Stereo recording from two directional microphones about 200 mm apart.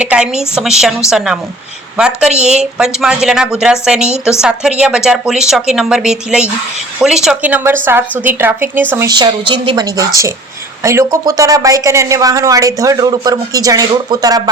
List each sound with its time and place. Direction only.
0.0 s speech: 5° right (ahead or behind)
2.3 s a woman's voice: 35° right (ahead or behind)
2.7 s speech: 5° right (ahead or behind); by 14.5 s 20° right (ahead or behind)